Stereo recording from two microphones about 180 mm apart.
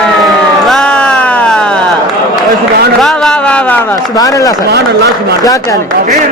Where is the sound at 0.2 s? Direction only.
Centre (ahead or behind).